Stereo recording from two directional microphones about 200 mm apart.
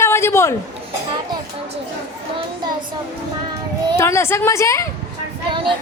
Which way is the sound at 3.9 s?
15° left (ahead or behind).